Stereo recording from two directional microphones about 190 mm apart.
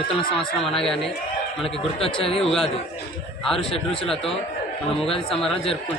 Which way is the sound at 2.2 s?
30° left (ahead or behind).